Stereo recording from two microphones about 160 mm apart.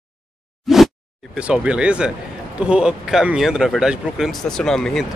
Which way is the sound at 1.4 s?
5° right (ahead or behind).